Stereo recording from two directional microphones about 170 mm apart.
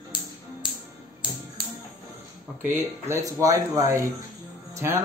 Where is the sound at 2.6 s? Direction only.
15° right (ahead or behind).